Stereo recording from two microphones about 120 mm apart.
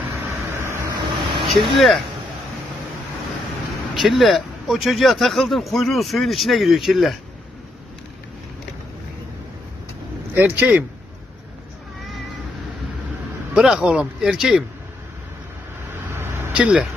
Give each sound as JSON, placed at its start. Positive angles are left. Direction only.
{"t": 0.5, "sound": "vehicle", "side_deg": -20}
{"t": 0.8, "sound": "vehicle", "side_deg": -45}
{"t": 1.5, "sound": "speech", "side_deg": 0}
{"t": 3.9, "sound": "speech", "side_deg": 0}
{"t": 10.3, "sound": "speech", "side_deg": -15}
{"t": 13.6, "sound": "speech", "side_deg": -5}
{"t": 16.1, "sound": "vehicle", "side_deg": -20}